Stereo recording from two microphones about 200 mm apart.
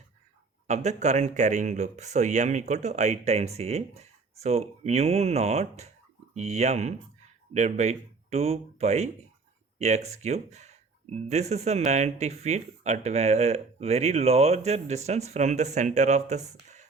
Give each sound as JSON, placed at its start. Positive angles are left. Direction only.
{"t": 0.7, "sound": "speech", "side_deg": -35}